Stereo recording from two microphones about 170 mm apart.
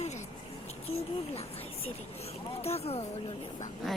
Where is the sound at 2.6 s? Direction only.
35° left (ahead or behind).